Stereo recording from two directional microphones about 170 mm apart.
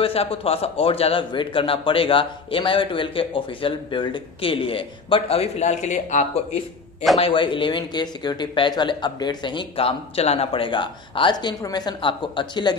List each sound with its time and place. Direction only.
0.0 s a man's voice: 35° left (ahead or behind)